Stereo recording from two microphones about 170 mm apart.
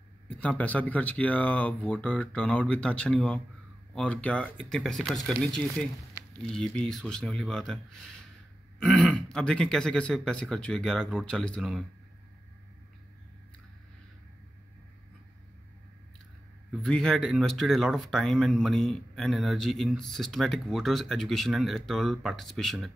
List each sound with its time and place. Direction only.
0.4 s speech: 10° left (ahead or behind)
16.8 s speech: centre (ahead or behind)